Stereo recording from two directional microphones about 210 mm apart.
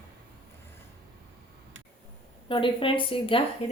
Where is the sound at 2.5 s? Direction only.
25° left (ahead or behind).